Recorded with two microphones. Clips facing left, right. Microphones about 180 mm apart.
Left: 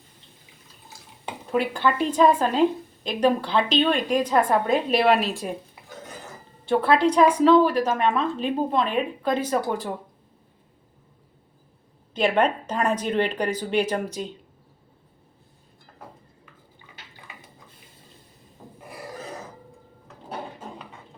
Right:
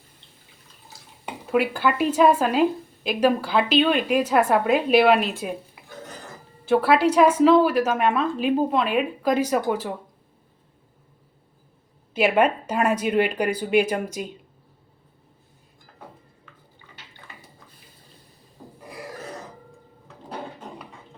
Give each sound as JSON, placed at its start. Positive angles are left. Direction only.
{"t": 0.9, "sound": "speech", "side_deg": -5}
{"t": 6.7, "sound": "speech", "side_deg": -5}
{"t": 12.1, "sound": "speech", "side_deg": -5}
{"t": 20.6, "sound": "a sound", "side_deg": 0}